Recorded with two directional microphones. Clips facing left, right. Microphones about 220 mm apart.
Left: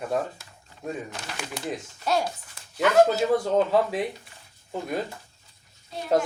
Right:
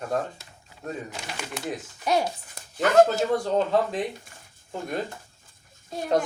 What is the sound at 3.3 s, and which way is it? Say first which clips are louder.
Speech: left 1 dB; 5° left (ahead or behind).